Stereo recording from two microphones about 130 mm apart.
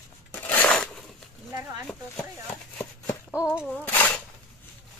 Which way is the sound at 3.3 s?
10° right (ahead or behind).